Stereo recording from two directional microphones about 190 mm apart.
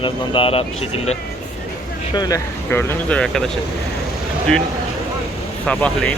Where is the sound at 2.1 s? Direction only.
20° left (ahead or behind).